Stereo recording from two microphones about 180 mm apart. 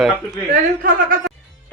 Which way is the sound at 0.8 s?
50° right (ahead or behind).